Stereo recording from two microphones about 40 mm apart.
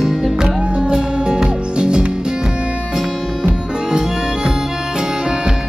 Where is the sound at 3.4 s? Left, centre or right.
Centre.